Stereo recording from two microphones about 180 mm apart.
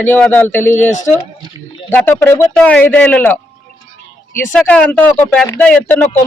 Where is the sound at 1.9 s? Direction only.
10° left (ahead or behind).